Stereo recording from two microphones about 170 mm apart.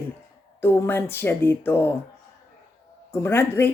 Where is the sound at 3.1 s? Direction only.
15° left (ahead or behind).